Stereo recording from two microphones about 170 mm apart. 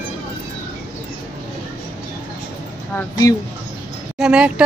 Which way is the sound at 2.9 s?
20° left (ahead or behind).